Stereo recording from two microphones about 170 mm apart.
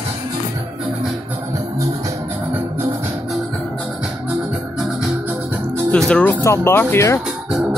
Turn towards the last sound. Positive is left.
turn(degrees=15)  # may be behind; listen again after turning